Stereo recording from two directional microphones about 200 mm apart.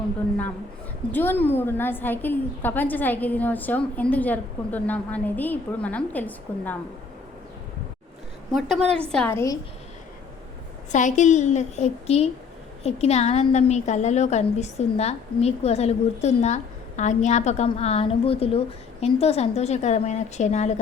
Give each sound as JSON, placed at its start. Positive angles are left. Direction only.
{"t": 1.1, "sound": "a woman's voice", "side_deg": 10}
{"t": 9.1, "sound": "a woman's voice", "side_deg": 10}
{"t": 10.9, "sound": "a woman's voice", "side_deg": 35}